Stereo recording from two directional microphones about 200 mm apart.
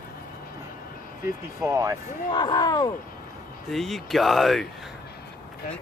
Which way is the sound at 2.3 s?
20° left (ahead or behind).